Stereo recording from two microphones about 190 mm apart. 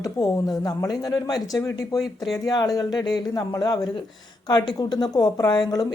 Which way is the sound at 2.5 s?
20° left (ahead or behind).